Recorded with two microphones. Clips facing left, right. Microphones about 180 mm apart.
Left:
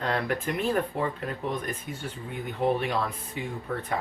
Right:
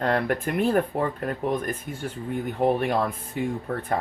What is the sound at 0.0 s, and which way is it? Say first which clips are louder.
Speech: right 4 dB; 50° right (ahead or behind).